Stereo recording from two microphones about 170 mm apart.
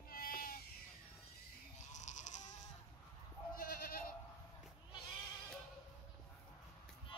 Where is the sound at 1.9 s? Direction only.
45° left (ahead or behind).